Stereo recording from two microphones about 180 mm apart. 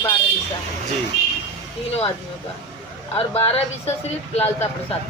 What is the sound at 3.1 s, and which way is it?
A man's voice, 35° left (ahead or behind).